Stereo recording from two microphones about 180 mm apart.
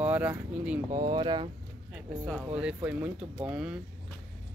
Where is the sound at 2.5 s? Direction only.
5° right (ahead or behind).